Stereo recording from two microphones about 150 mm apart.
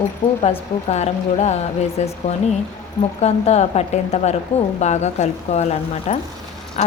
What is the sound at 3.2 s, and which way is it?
A woman's voice, 45° left (ahead or behind).